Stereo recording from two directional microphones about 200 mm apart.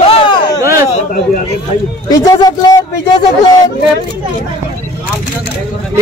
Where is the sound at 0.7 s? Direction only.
45° left (ahead or behind).